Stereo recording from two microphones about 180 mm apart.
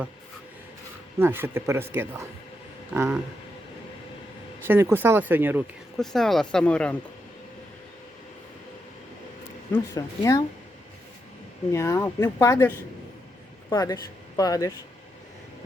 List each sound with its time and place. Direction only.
1.2 s speech: 10° right (ahead or behind)
4.6 s speech: 15° right (ahead or behind)
6.0 s speech: centre (ahead or behind)
9.7 s speech: 15° left (ahead or behind)
11.7 s speech: 15° left (ahead or behind)